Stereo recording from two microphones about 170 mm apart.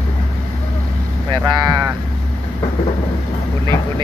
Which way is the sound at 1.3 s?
25° right (ahead or behind).